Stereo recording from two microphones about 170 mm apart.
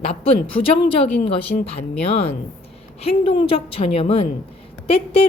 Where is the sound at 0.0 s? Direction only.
35° left (ahead or behind).